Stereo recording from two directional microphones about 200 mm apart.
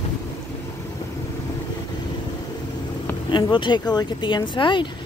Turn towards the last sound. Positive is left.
turn(degrees=25)  # may be behind; listen again after turning